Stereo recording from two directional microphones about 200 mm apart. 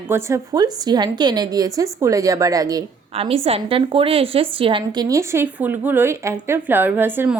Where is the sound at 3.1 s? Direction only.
30° right (ahead or behind).